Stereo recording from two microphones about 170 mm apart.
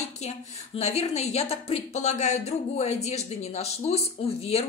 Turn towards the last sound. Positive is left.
turn(degrees=35)  # may be behind; listen again after turning